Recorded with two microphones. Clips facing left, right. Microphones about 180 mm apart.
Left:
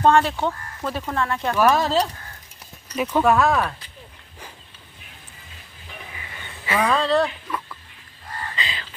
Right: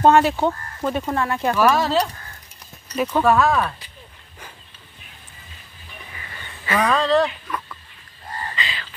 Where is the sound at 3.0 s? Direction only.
5° left (ahead or behind).